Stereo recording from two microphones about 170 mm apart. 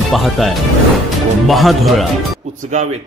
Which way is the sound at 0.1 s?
Centre (ahead or behind).